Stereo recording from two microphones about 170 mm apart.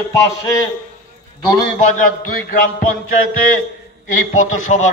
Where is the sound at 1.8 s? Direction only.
50° left (ahead or behind).